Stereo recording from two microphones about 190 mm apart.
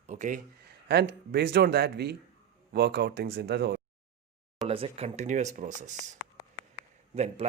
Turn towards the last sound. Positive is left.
turn(degrees=-35)  # may be behind; listen again after turning